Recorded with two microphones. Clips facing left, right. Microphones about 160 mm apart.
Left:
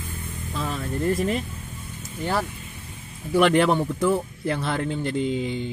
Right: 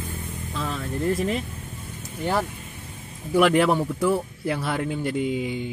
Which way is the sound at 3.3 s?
5° right (ahead or behind).